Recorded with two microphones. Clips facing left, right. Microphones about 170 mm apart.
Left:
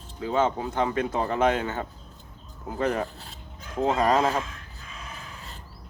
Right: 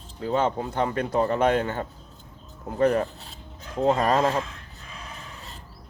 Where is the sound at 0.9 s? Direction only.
40° right (ahead or behind).